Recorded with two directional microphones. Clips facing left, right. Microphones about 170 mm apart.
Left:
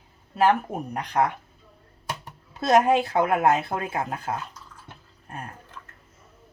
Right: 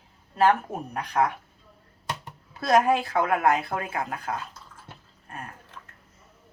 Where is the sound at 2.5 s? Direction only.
25° left (ahead or behind).